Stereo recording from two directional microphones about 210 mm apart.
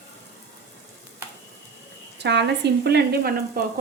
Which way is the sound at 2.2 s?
55° right (ahead or behind).